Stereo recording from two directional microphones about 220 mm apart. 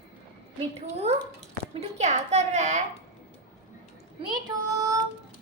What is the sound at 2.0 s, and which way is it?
Speech, 30° right (ahead or behind).